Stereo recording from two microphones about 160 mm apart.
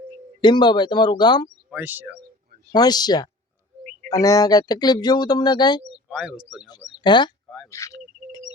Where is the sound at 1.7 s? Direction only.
10° right (ahead or behind).